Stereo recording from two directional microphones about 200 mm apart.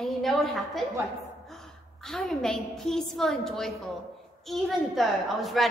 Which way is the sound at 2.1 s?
Centre (ahead or behind).